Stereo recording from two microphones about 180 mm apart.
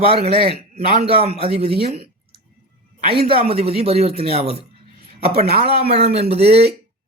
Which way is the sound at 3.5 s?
35° right (ahead or behind).